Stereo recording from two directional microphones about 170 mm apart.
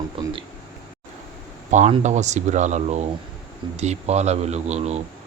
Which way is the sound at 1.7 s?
45° right (ahead or behind).